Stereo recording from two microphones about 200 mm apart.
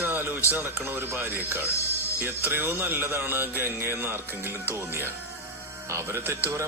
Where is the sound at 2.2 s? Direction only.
10° right (ahead or behind).